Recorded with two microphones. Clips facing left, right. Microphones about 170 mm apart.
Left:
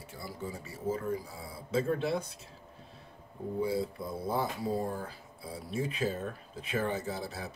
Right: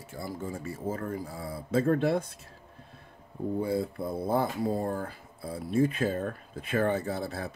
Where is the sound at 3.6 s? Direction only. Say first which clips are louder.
Even; 55° right (ahead or behind).